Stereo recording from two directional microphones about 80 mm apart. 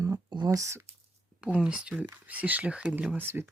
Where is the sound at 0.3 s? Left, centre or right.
Right.